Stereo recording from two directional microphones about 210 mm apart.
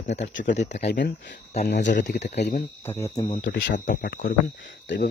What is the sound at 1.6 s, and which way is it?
Speech, 55° left (ahead or behind).